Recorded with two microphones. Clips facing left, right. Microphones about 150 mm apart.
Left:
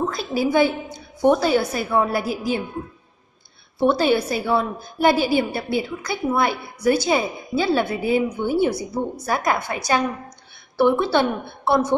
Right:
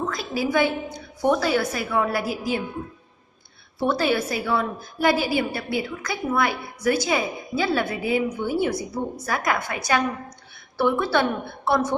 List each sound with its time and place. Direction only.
0.1 s a woman's voice: 25° left (ahead or behind)
3.8 s a woman's voice: 25° left (ahead or behind)
10.8 s a woman's voice: 25° left (ahead or behind)